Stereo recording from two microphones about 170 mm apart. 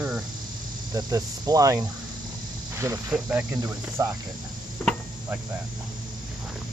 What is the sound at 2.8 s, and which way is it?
Cricket, 20° right (ahead or behind).